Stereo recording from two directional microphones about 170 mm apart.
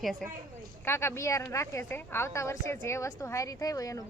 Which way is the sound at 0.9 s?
15° left (ahead or behind).